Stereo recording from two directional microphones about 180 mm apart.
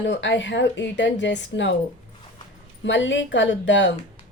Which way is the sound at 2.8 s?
90° left.